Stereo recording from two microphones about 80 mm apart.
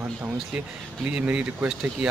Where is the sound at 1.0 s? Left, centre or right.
Right.